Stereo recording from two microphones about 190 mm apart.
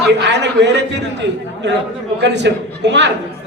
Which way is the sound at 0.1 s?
65° right (ahead or behind).